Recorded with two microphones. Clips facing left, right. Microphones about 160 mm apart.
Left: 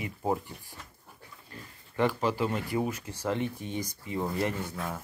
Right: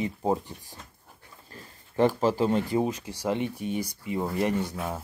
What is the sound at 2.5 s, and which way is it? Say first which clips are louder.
Speech: right 5 dB; 25° right (ahead or behind).